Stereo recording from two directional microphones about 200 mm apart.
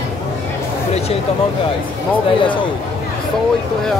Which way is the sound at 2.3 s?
25° left (ahead or behind).